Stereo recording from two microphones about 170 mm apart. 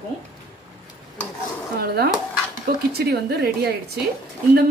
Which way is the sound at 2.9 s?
70° right (ahead or behind).